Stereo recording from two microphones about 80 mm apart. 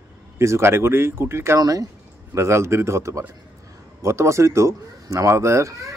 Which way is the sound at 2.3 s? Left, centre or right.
Right.